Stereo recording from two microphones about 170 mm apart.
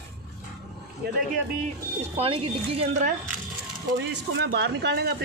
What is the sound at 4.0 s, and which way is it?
Speech, 80° right.